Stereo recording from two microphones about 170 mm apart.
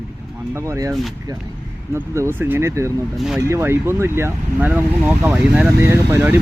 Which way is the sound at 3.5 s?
15° right (ahead or behind).